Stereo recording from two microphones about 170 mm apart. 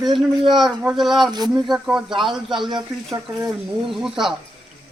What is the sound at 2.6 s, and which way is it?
Speech, 25° right (ahead or behind).